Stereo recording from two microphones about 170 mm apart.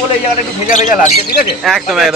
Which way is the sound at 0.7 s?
45° left (ahead or behind).